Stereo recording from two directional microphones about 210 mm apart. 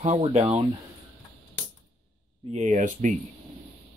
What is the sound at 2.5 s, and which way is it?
Speech, 35° right (ahead or behind).